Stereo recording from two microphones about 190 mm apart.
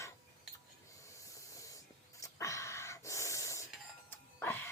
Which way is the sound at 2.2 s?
15° left (ahead or behind).